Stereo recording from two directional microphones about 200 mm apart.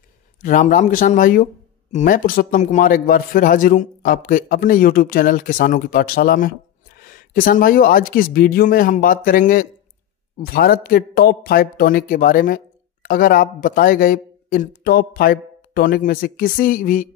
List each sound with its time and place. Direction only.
0.4 s speech: 40° left (ahead or behind)